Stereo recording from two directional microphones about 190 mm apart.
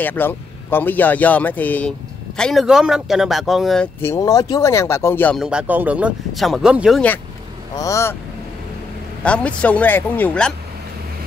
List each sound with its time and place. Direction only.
0.0 s speech: 10° left (ahead or behind)
4.0 s speech: 15° left (ahead or behind)
5.4 s speech: 5° right (ahead or behind)
7.7 s speech: 15° left (ahead or behind)
9.2 s speech: 5° left (ahead or behind)